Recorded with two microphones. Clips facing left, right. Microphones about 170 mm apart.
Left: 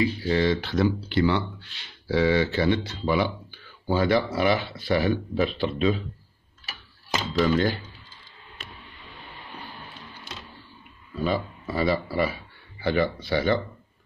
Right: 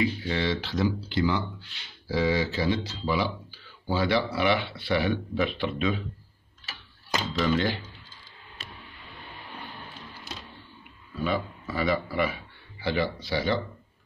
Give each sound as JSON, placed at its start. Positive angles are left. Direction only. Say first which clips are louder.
{"t": 0.0, "sound": "speech", "louder": "left 4 dB", "side_deg": 40}
{"t": 7.3, "sound": "speech", "louder": "left 4 dB", "side_deg": 40}
{"t": 11.2, "sound": "speech", "louder": "left 2 dB", "side_deg": 35}
{"t": 12.8, "sound": "speech", "louder": "left 4 dB", "side_deg": 50}